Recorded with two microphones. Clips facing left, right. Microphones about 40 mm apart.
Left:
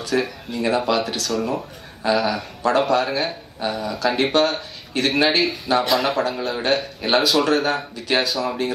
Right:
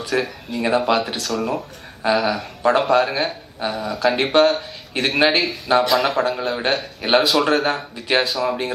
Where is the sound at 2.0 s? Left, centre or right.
Centre.